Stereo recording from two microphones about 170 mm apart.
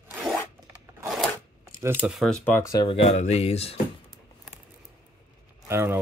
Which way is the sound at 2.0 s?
Centre (ahead or behind).